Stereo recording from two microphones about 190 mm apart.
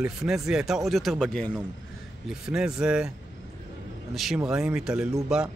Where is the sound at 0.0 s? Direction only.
5° right (ahead or behind).